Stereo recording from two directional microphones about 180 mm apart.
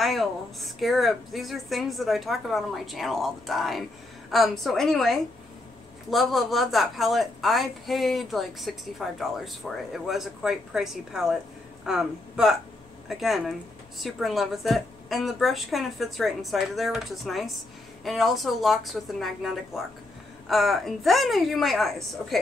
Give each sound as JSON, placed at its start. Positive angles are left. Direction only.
{"t": 0.0, "sound": "a woman's voice", "side_deg": 0}